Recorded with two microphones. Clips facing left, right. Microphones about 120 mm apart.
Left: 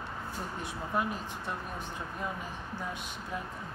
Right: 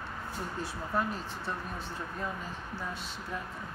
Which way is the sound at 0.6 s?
15° left (ahead or behind).